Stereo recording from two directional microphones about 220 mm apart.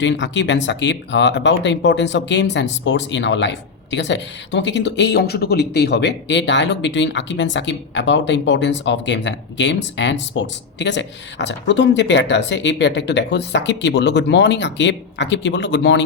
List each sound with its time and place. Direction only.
0.0 s speech: 55° left (ahead or behind)